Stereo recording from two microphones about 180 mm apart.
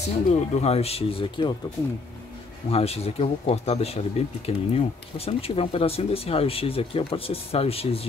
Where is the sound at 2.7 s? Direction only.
35° left (ahead or behind).